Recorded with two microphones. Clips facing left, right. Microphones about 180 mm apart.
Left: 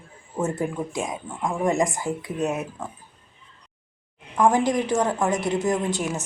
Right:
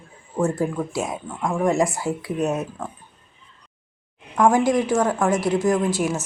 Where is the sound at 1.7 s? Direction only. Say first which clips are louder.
Right 2 dB; 15° left (ahead or behind).